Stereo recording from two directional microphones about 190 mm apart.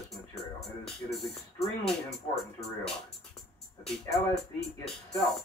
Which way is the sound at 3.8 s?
Centre (ahead or behind).